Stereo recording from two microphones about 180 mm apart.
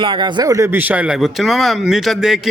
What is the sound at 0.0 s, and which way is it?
A man's voice, 25° right (ahead or behind).